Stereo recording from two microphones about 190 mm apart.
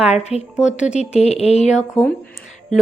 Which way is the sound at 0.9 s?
35° left (ahead or behind).